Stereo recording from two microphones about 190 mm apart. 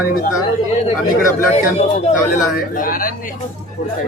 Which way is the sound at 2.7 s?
45° left (ahead or behind).